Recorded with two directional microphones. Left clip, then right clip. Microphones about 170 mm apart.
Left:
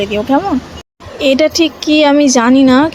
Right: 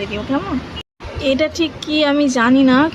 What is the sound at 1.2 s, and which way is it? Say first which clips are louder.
Speech: left 7 dB; 35° left (ahead or behind).